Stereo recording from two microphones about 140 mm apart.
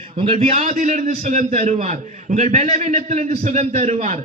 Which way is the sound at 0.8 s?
65° right (ahead or behind).